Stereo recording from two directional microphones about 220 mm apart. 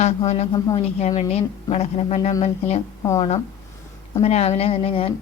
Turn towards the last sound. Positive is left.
turn(degrees=25)  # may be behind; listen again after turning